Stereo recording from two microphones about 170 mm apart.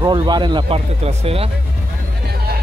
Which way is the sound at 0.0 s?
25° right (ahead or behind).